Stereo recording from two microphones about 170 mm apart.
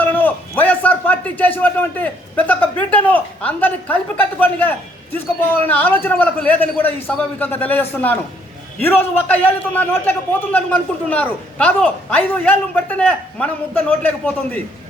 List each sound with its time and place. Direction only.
0.0 s a man's voice: 10° left (ahead or behind)